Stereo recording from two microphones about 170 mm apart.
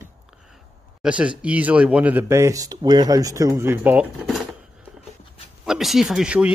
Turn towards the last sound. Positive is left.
turn(degrees=-5)  # may be behind; listen again after turning